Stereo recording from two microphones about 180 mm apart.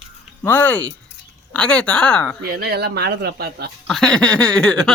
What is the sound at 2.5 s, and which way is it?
Speech, 60° right (ahead or behind).